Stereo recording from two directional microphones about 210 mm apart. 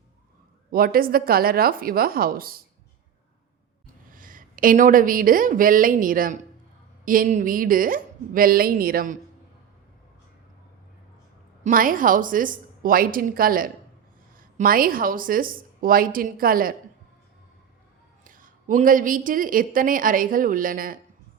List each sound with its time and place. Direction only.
0.7 s a woman's voice: 45° right (ahead or behind)
4.1 s speech: 40° right (ahead or behind)
11.6 s a woman's voice: 40° right (ahead or behind)
18.3 s speech: 40° right (ahead or behind)